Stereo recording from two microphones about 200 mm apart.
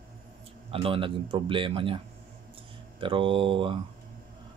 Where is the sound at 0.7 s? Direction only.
25° right (ahead or behind).